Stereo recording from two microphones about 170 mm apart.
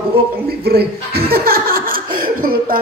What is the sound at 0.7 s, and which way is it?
A man's voice, 65° right (ahead or behind).